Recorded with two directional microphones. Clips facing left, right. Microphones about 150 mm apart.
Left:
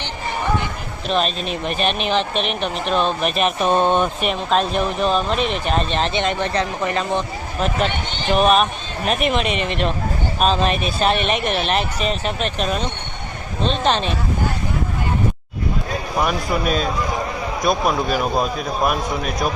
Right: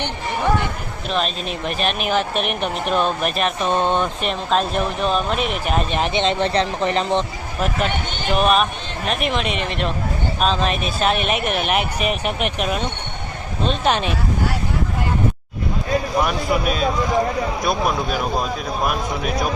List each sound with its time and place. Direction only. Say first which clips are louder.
1.0 s speech: left 2 dB; centre (ahead or behind)
3.6 s speech: left 3 dB; 15° left (ahead or behind); by 7.3 s 25° right (ahead or behind)
8.3 s speech: left 2 dB; centre (ahead or behind)
16.2 s speech: even; 5° right (ahead or behind)